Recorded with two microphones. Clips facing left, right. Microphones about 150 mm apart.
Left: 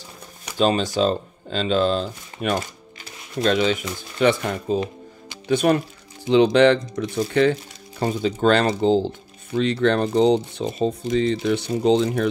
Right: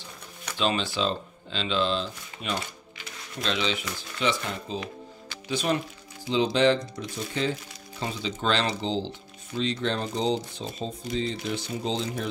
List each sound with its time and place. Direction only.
0.6 s speech: 40° left (ahead or behind)
6.2 s speech: 65° left (ahead or behind)
8.0 s speech: 50° left (ahead or behind)
9.6 s speech: 60° left (ahead or behind)